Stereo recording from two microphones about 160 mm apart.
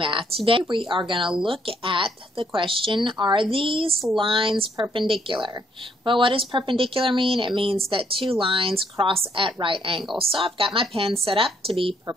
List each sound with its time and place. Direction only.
0.5 s speech: 30° right (ahead or behind)